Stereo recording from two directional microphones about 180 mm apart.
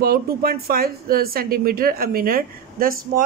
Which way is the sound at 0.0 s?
55° right (ahead or behind).